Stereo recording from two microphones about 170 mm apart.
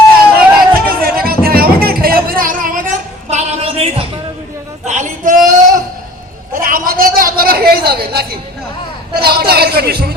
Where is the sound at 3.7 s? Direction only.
35° right (ahead or behind).